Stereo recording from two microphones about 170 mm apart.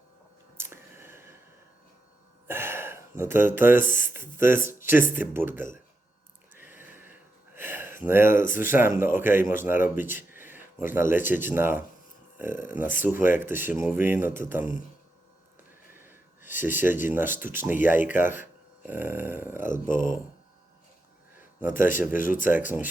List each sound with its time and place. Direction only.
0.5 s a sound: 15° right (ahead or behind)
2.5 s speech: 15° right (ahead or behind)
6.5 s sniff: 10° right (ahead or behind)
8.5 s speech: 15° right (ahead or behind)
16.0 s a sound: 10° right (ahead or behind)
17.4 s speech: 15° right (ahead or behind)
19.6 s speech: 50° left (ahead or behind)
22.1 s speech: 55° left (ahead or behind)
22.4 s speech: 10° right (ahead or behind)